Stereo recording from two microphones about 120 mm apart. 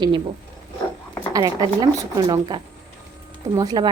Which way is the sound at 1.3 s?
30° right (ahead or behind).